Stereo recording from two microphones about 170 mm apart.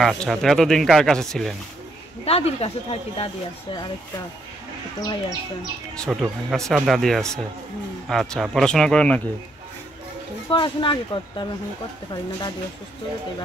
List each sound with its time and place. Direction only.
0.0 s speech: centre (ahead or behind)
2.2 s speech: 35° left (ahead or behind)
5.9 s speech: centre (ahead or behind)
10.5 s speech: 30° left (ahead or behind)